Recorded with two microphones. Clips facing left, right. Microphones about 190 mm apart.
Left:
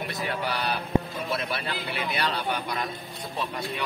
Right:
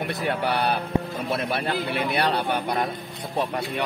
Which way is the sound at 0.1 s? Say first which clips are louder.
Right 6 dB; 60° right (ahead or behind).